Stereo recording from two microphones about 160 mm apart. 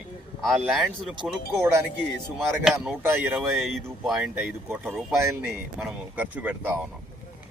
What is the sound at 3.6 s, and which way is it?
Speech, centre (ahead or behind).